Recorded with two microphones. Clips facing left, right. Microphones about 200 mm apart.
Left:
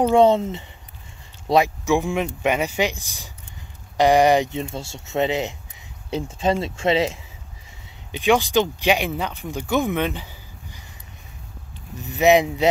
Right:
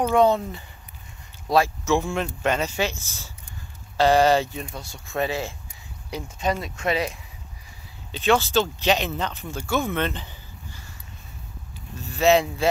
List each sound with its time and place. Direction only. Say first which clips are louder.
0.0 s speech: left 4 dB; 25° left (ahead or behind)
8.1 s speech: left 2 dB; 15° left (ahead or behind)
12.0 s speech: left 3 dB; 15° left (ahead or behind)